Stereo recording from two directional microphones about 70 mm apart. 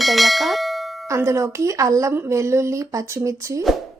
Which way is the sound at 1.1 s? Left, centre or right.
Right.